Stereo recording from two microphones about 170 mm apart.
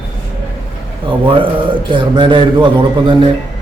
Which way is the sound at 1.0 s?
30° right (ahead or behind).